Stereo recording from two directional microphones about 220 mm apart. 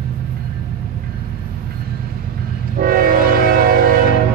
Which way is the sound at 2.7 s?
40° right (ahead or behind).